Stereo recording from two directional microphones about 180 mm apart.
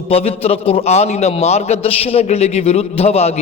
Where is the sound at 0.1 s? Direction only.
35° left (ahead or behind).